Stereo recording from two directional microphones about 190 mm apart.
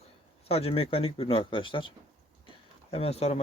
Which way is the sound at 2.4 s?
30° left (ahead or behind).